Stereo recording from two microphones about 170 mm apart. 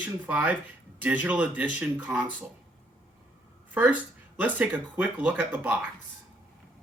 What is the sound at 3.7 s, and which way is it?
Speech, 10° right (ahead or behind).